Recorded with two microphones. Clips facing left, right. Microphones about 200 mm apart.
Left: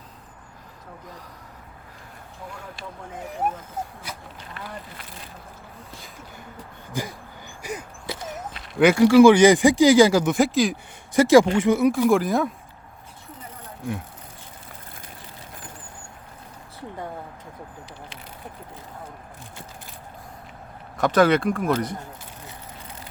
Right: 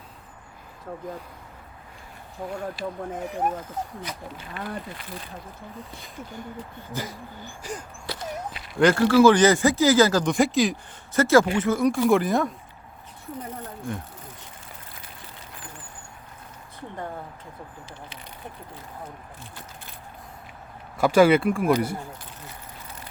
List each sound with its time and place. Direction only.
2.4 s speech: 55° right (ahead or behind)
6.9 s speech: 15° left (ahead or behind)
8.5 s speech: centre (ahead or behind)
11.1 s speech: 15° left (ahead or behind)
21.0 s speech: 10° right (ahead or behind)